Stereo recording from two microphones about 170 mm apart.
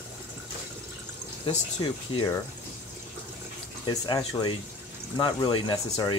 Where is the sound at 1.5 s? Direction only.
30° left (ahead or behind).